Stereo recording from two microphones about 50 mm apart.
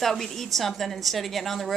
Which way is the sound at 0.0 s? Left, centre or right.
Centre.